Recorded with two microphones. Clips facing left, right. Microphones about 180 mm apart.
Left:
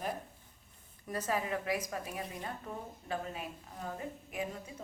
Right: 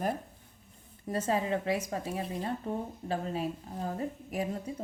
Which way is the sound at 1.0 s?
30° right (ahead or behind).